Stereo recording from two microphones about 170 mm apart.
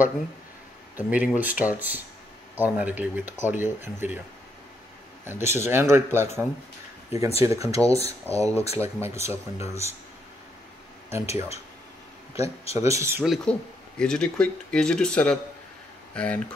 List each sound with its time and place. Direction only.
0.9 s speech: 10° right (ahead or behind)
5.2 s speech: 15° right (ahead or behind)
7.1 s speech: 40° left (ahead or behind)
7.4 s speech: 20° right (ahead or behind)
7.9 s speech: 35° left (ahead or behind)
8.7 s speech: 15° right (ahead or behind)
11.1 s speech: 15° right (ahead or behind)
13.2 s speech: centre (ahead or behind)